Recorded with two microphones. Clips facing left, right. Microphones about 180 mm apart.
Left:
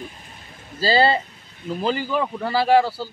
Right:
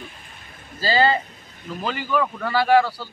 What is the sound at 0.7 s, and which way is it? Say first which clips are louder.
A man's voice: left 1 dB; 30° left (ahead or behind).